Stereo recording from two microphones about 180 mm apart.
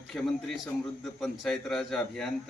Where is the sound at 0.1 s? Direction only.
Centre (ahead or behind).